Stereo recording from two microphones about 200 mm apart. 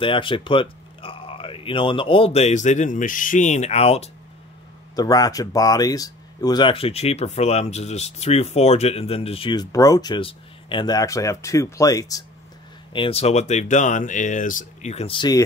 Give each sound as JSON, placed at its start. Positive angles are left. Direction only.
{"t": 0.0, "sound": "speech", "side_deg": 25}
{"t": 4.9, "sound": "speech", "side_deg": 20}
{"t": 12.9, "sound": "speech", "side_deg": 30}